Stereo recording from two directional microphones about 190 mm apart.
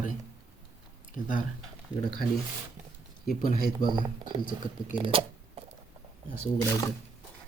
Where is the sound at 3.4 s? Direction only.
45° left (ahead or behind).